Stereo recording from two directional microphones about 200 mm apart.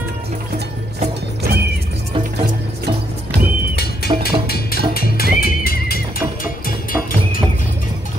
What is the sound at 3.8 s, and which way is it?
Music, 50° left (ahead or behind).